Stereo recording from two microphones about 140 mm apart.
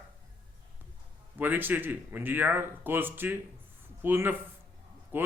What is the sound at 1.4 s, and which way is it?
Speech, 15° right (ahead or behind).